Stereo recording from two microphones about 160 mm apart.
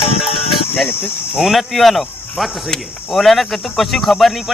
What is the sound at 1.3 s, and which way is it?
Speech, centre (ahead or behind).